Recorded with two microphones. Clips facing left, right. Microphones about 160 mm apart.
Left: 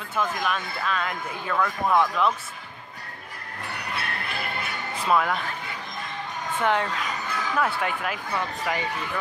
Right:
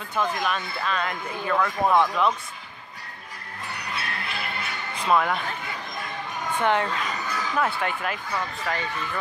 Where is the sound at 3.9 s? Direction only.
55° left (ahead or behind).